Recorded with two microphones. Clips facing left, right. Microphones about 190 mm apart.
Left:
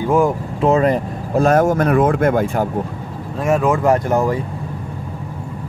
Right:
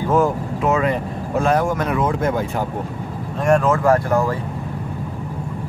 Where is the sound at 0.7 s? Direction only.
35° left (ahead or behind); by 2.4 s 55° left (ahead or behind).